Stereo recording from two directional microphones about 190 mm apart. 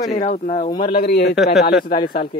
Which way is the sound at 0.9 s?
55° left (ahead or behind).